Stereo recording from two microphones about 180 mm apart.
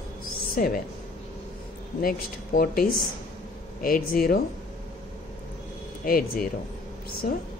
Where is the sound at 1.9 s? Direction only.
55° left (ahead or behind).